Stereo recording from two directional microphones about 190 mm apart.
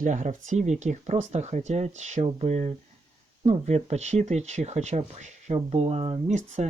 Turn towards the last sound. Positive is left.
turn(degrees=-35)  # may be behind; listen again after turning